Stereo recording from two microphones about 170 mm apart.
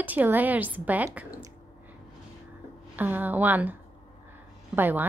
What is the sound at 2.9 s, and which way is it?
A woman's voice, 10° right (ahead or behind).